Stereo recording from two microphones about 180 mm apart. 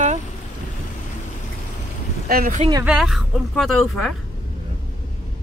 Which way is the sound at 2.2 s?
50° right (ahead or behind).